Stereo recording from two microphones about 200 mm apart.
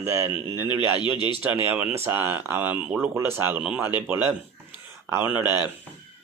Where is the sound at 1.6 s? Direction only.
10° right (ahead or behind).